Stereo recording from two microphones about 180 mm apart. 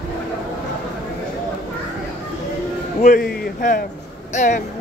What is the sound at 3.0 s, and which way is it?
A man's voice, 55° left (ahead or behind).